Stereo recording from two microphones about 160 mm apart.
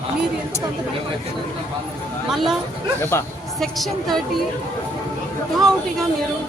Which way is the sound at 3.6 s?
Centre (ahead or behind).